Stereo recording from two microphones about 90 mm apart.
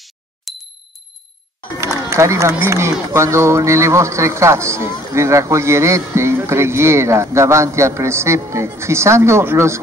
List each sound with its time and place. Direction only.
0.5 s ding: centre (ahead or behind)
2.0 s speech: 30° right (ahead or behind)